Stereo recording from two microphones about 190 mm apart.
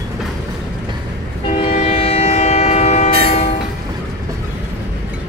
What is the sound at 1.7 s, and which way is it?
Train, 35° left (ahead or behind).